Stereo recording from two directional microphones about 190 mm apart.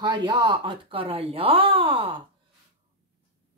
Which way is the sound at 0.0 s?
25° right (ahead or behind).